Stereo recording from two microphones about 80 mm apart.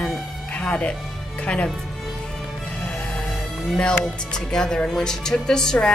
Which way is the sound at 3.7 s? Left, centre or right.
Centre.